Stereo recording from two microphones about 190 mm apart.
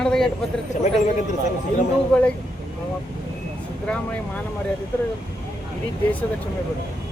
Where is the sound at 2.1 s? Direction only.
5° left (ahead or behind).